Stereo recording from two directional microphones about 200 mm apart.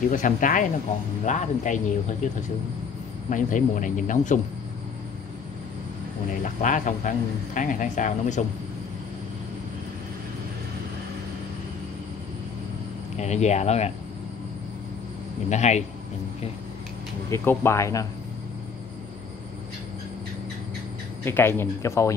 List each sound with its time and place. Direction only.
0.1 s speech: 40° left (ahead or behind)
3.3 s speech: 40° left (ahead or behind)
6.4 s speech: 40° left (ahead or behind)
13.2 s speech: 35° left (ahead or behind)
15.5 s speech: 35° left (ahead or behind)
17.3 s speech: 15° left (ahead or behind)
21.2 s speech: 10° left (ahead or behind)